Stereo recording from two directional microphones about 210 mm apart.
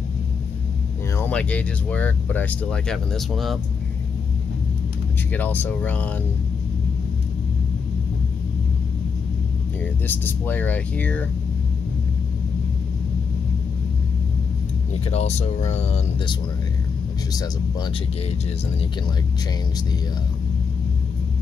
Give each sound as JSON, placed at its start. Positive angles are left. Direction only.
{"t": 1.1, "sound": "speech", "side_deg": 5}
{"t": 5.3, "sound": "speech", "side_deg": 10}
{"t": 10.0, "sound": "speech", "side_deg": 10}
{"t": 15.0, "sound": "speech", "side_deg": 30}
{"t": 17.3, "sound": "speech", "side_deg": 20}